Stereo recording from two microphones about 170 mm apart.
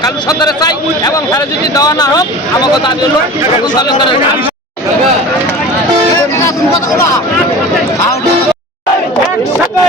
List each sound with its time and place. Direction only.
0.0 s speech: 20° left (ahead or behind)